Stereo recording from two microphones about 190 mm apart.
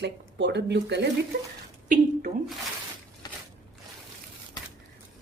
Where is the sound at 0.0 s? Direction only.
65° right (ahead or behind).